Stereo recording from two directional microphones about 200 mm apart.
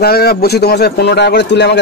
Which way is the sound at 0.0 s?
50° left (ahead or behind).